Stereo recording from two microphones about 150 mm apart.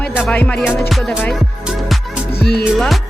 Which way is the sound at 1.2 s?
5° left (ahead or behind).